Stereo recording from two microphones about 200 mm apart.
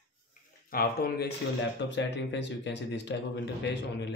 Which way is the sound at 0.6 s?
45° left (ahead or behind).